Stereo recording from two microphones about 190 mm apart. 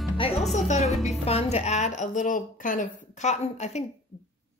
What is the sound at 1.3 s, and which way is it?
A woman's voice, 35° left (ahead or behind).